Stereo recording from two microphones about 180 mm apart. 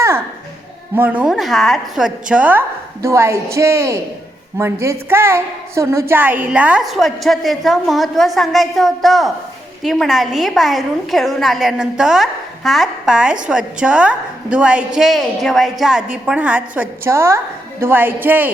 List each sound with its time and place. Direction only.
0.9 s a woman's voice: 10° right (ahead or behind)